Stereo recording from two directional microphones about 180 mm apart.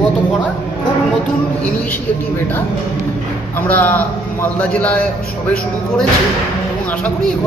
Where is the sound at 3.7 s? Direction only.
10° left (ahead or behind).